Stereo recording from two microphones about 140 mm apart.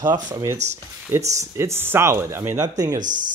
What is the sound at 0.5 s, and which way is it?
Speech, 55° right (ahead or behind).